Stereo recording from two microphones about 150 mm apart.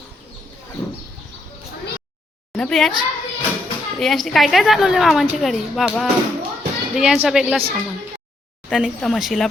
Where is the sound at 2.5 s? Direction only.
5° left (ahead or behind).